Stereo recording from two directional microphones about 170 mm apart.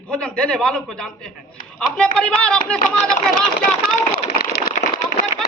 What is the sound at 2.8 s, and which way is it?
Speech, 50° left (ahead or behind).